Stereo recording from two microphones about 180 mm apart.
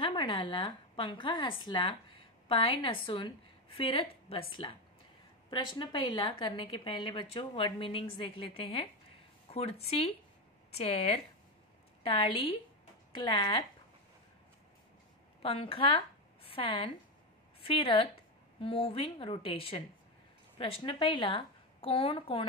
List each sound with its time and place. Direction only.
0.0 s a woman's voice: 25° left (ahead or behind)
15.4 s a woman's voice: 30° left (ahead or behind)